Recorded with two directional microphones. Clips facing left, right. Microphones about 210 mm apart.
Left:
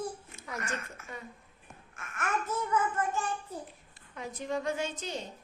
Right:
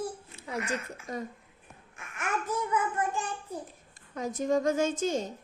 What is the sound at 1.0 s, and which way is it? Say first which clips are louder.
Speech: right 8 dB; 40° right (ahead or behind).